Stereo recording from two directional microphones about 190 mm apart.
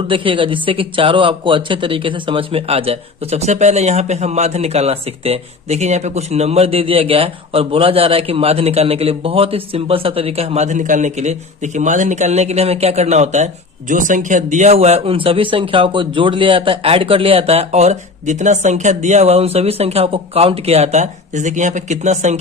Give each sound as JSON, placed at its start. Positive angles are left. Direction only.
{"t": 0.1, "sound": "speech", "side_deg": -25}